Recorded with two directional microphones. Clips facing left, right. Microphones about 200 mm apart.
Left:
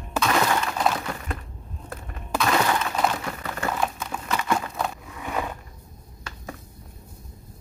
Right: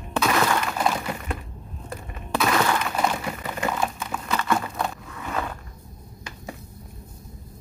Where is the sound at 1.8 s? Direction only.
Centre (ahead or behind).